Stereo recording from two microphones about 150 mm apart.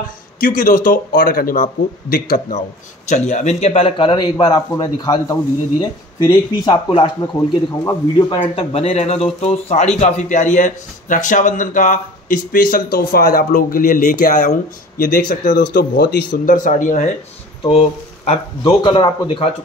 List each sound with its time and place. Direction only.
0.4 s speech: 65° left (ahead or behind)
3.1 s a man's voice: 50° left (ahead or behind); by 8.4 s 20° left (ahead or behind)
8.5 s speech: 45° left (ahead or behind)
17.6 s a man's voice: 45° left (ahead or behind)